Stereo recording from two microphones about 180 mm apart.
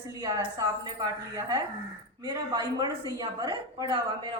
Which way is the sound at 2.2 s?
20° right (ahead or behind).